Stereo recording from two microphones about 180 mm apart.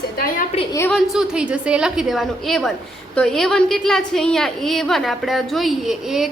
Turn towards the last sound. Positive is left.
turn(degrees=0)  # may be behind; listen again after turning